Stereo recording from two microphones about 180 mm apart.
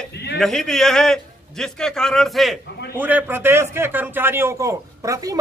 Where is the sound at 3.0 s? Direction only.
10° right (ahead or behind).